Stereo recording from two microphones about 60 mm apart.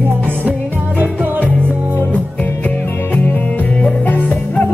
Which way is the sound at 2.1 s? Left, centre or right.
Left.